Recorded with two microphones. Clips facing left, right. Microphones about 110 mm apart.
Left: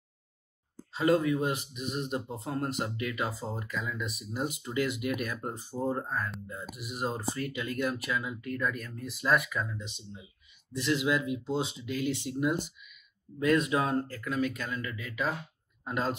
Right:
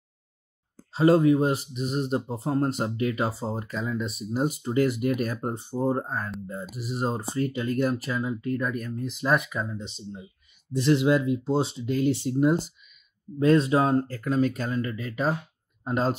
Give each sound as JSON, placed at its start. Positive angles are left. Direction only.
{"t": 0.9, "sound": "speech", "side_deg": -30}